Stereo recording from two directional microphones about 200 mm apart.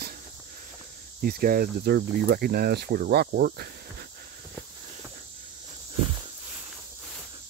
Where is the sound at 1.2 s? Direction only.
45° right (ahead or behind).